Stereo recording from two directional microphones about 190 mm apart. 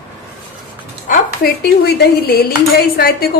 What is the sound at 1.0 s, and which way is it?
A woman's voice, 45° left (ahead or behind).